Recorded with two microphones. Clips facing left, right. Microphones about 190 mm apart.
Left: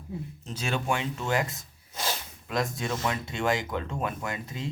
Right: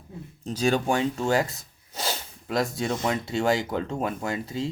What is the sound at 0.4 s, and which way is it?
Speech, 35° right (ahead or behind).